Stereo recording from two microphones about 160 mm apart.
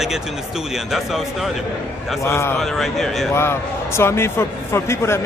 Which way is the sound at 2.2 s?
15° left (ahead or behind).